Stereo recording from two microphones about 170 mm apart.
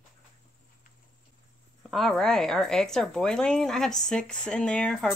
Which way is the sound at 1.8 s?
Centre (ahead or behind).